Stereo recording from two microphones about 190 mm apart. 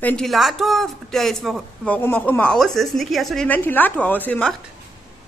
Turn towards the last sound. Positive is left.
turn(degrees=5)  # may be behind; listen again after turning